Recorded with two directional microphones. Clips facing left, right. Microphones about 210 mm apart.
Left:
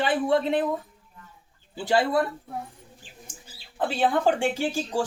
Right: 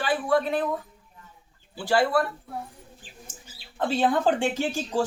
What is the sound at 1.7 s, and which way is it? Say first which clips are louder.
Speech: even; 20° left (ahead or behind).